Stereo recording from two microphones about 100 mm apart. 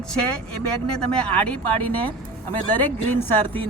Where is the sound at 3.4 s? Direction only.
60° right (ahead or behind).